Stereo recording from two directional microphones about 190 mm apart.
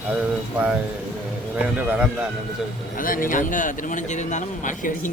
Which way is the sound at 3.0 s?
45° left (ahead or behind).